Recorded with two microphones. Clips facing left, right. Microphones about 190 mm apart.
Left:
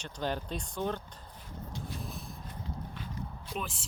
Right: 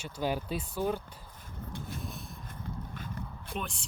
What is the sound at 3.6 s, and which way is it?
Speech, centre (ahead or behind).